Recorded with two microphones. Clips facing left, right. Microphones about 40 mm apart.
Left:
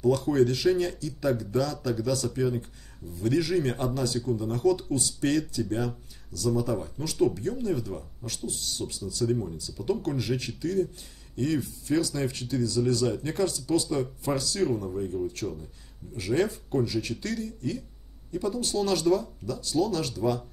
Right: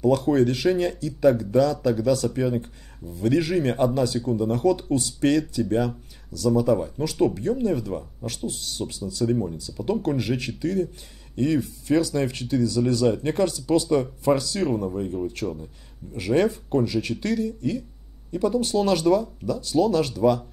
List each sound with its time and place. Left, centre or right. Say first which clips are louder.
0.3 s speech: right 3 dB; right
8.0 s speech: right 5 dB; right
8.5 s speech: right 2 dB; right
9.2 s speech: right 4 dB; right